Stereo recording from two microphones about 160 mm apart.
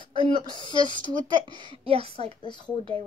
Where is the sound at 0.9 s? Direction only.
30° right (ahead or behind).